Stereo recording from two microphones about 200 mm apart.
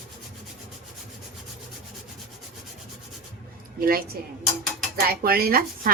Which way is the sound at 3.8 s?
50° right (ahead or behind).